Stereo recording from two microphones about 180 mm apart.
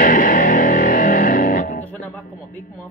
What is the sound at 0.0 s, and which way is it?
Music, 50° left (ahead or behind).